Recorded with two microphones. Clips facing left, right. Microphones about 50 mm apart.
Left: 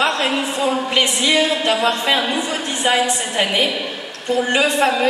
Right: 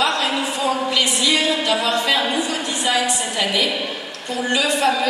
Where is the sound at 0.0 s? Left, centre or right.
Left.